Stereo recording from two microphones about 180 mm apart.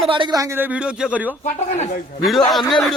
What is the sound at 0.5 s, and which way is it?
Speech, 5° right (ahead or behind).